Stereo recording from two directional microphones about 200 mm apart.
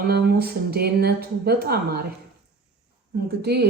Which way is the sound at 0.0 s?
50° right (ahead or behind).